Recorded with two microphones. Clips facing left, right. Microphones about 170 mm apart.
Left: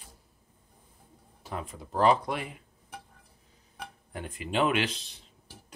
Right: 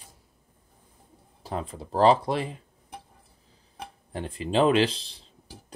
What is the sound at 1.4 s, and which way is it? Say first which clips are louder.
Speech: right 5 dB; 30° right (ahead or behind).